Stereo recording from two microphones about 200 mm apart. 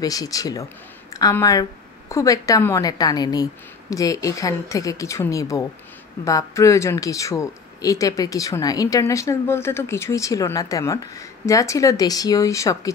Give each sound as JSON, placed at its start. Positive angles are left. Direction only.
{"t": 0.0, "sound": "speech", "side_deg": 20}